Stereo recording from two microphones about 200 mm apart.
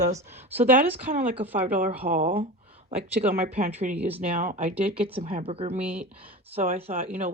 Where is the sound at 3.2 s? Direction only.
30° right (ahead or behind).